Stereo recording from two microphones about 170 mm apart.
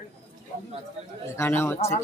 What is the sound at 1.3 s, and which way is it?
Speech, 15° left (ahead or behind).